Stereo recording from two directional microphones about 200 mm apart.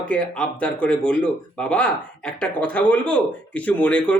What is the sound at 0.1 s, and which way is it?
Speech, 5° left (ahead or behind).